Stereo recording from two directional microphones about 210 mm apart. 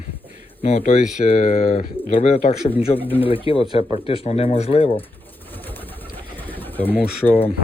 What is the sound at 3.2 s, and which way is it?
Speech, 25° left (ahead or behind).